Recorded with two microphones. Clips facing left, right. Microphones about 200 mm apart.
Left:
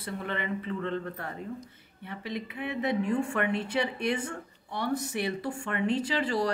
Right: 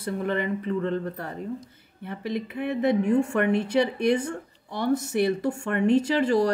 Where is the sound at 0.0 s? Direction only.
40° right (ahead or behind).